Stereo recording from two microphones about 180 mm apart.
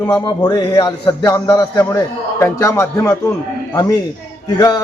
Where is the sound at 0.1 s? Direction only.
25° left (ahead or behind).